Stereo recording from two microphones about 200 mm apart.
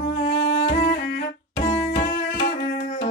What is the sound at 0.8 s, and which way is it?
Bowed string instrument, 45° left (ahead or behind).